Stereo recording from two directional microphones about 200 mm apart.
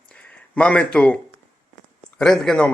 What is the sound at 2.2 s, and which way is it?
Speech, 5° left (ahead or behind).